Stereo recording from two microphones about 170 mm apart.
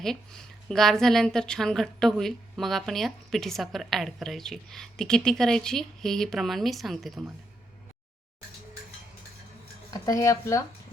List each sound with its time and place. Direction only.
0.0 s speech: 5° left (ahead or behind)
9.9 s speech: 20° left (ahead or behind)